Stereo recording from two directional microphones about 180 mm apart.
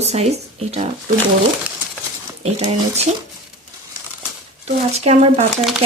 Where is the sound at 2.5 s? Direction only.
35° right (ahead or behind).